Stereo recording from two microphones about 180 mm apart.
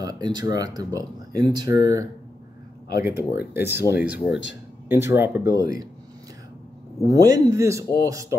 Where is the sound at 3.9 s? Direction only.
5° right (ahead or behind).